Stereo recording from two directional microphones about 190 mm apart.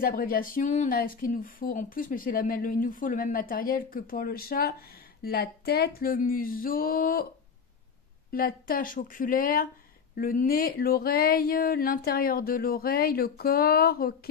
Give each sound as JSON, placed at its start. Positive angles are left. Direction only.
{"t": 0.0, "sound": "speech", "side_deg": 50}
{"t": 8.3, "sound": "speech", "side_deg": 50}